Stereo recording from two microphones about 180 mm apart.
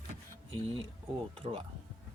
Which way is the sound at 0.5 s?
30° right (ahead or behind).